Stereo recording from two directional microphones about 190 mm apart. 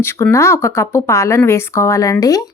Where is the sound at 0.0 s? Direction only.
15° left (ahead or behind).